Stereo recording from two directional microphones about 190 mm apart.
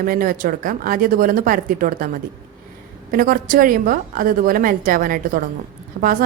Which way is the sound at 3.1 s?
50° right (ahead or behind).